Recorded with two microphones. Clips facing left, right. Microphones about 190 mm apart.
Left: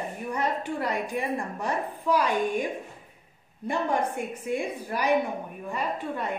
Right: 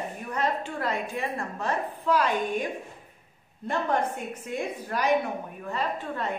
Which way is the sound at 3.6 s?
10° left (ahead or behind).